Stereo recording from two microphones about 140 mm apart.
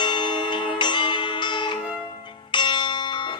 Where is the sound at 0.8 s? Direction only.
35° left (ahead or behind).